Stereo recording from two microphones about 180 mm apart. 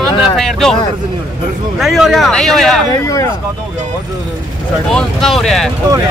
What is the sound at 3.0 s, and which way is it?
Speech, 20° left (ahead or behind).